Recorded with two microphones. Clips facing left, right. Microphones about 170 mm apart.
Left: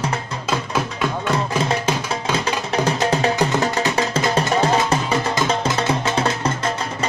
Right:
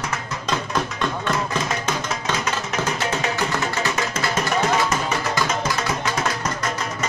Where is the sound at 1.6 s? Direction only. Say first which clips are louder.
Left 4 dB; 30° left (ahead or behind).